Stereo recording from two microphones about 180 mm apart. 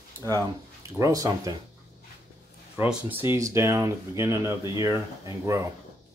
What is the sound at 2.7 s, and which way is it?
Speech, 10° right (ahead or behind).